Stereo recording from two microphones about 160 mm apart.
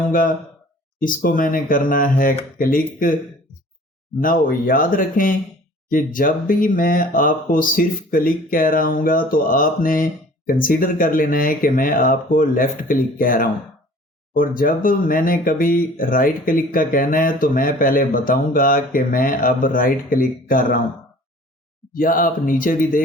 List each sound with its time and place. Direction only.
0.1 s speech: 60° left (ahead or behind)
4.2 s speech: 60° left (ahead or behind)
21.9 s speech: 60° left (ahead or behind)